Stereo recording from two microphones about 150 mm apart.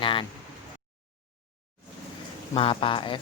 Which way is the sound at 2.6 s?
35° left (ahead or behind).